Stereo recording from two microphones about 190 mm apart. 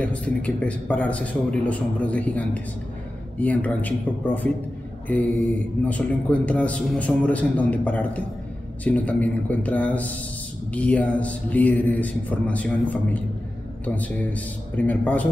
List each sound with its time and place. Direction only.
0.0 s a man's voice: 5° left (ahead or behind)
5.0 s mantra: 10° left (ahead or behind)
5.4 s a man's voice: 5° left (ahead or behind)